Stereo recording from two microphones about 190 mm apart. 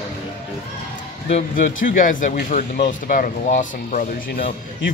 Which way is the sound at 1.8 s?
45° left (ahead or behind).